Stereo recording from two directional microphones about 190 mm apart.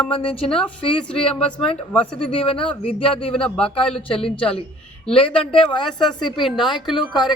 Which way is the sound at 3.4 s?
5° left (ahead or behind).